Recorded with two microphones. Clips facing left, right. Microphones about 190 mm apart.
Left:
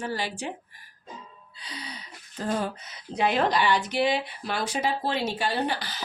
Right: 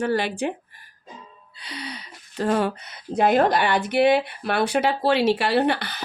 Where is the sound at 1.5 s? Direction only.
65° right (ahead or behind).